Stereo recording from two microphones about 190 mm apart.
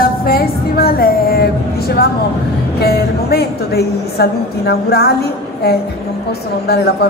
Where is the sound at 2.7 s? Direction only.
55° left (ahead or behind).